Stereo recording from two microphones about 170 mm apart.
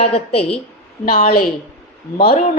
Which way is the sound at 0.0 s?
35° left (ahead or behind).